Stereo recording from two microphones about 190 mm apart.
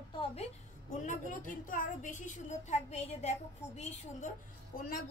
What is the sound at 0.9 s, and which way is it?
A woman's voice, 45° left (ahead or behind).